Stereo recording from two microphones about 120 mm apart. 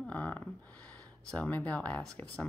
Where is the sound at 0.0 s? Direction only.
10° left (ahead or behind).